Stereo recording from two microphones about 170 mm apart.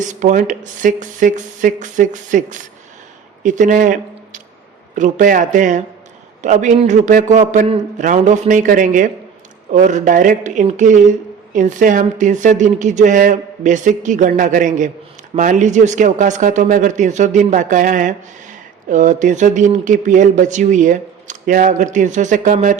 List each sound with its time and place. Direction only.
0.0 s speech: 45° right (ahead or behind)